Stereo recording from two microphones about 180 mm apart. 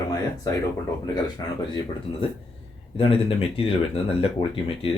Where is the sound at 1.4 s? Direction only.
20° left (ahead or behind).